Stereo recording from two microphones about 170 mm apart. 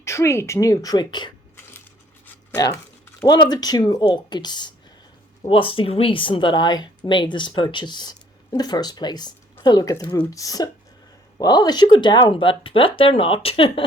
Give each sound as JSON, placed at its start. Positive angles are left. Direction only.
{"t": 0.0, "sound": "speech", "side_deg": 15}
{"t": 3.2, "sound": "speech", "side_deg": 25}